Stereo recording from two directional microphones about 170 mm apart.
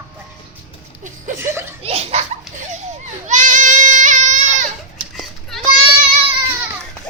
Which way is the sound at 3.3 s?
50° right (ahead or behind).